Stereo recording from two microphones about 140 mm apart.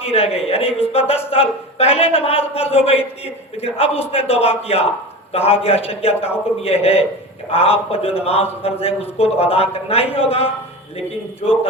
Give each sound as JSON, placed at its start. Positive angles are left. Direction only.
{"t": 0.0, "sound": "a man's voice", "side_deg": 45}